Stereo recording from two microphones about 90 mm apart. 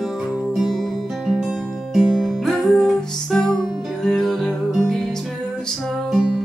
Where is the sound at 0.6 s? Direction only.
Centre (ahead or behind).